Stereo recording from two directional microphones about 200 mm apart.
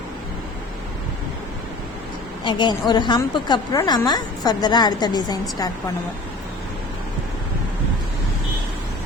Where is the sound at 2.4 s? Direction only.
20° left (ahead or behind).